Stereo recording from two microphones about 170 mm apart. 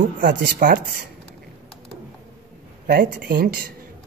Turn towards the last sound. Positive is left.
turn(degrees=-60)  # may be behind; listen again after turning